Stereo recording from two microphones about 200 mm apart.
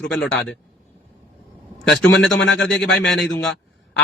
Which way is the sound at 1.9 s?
Centre (ahead or behind).